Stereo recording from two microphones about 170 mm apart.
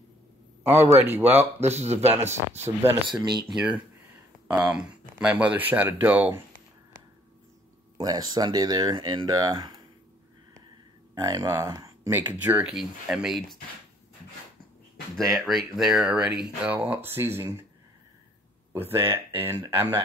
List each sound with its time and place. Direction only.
0.7 s speech: 10° right (ahead or behind)
1.6 s speech: 40° right (ahead or behind)
3.4 s speech: 5° right (ahead or behind)
8.0 s speech: 20° right (ahead or behind)
11.1 s speech: 20° right (ahead or behind); by 13.6 s centre (ahead or behind)
15.1 s speech: centre (ahead or behind)
18.7 s speech: 15° right (ahead or behind)